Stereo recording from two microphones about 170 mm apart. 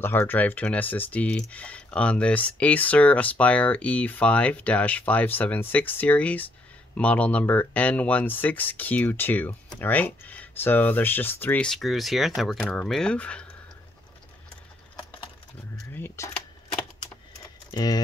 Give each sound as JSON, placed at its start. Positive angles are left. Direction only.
{"t": 0.0, "sound": "speech", "side_deg": 10}
{"t": 15.8, "sound": "a sound", "side_deg": 10}
{"t": 17.4, "sound": "typing", "side_deg": 20}